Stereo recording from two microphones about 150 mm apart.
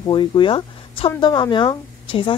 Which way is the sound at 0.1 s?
30° left (ahead or behind).